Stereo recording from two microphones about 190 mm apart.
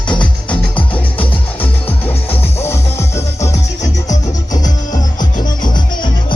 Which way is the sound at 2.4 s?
15° left (ahead or behind).